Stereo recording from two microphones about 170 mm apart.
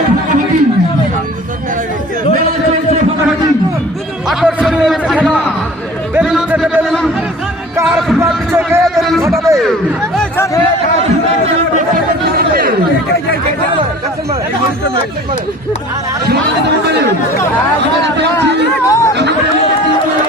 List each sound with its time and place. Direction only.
4.3 s a sound: centre (ahead or behind)
8.2 s music: 15° right (ahead or behind)
8.8 s a sound: centre (ahead or behind)
9.5 s chatter: 20° right (ahead or behind)
10.2 s music: 15° left (ahead or behind)
12.4 s chatter: 60° right (ahead or behind)
18.2 s speech: 85° right
18.9 s speech: 15° left (ahead or behind)